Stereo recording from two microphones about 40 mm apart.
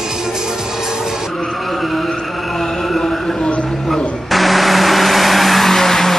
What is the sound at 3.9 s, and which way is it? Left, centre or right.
Vehicle, centre.